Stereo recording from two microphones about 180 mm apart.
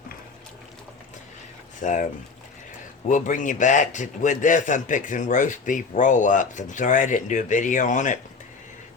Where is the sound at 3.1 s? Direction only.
45° left (ahead or behind).